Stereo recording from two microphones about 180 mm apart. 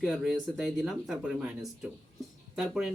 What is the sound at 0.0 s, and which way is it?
Speech, centre (ahead or behind).